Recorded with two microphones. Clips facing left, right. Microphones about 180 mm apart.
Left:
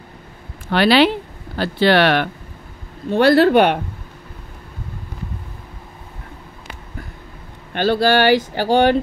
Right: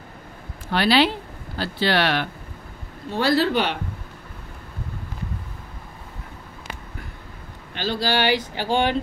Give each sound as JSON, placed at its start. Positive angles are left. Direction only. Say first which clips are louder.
{"t": 0.7, "sound": "speech", "louder": "left 5 dB", "side_deg": 70}
{"t": 7.7, "sound": "speech", "louder": "left 8 dB", "side_deg": 55}